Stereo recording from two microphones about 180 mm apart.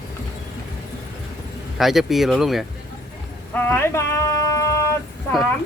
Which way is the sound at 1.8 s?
Centre (ahead or behind).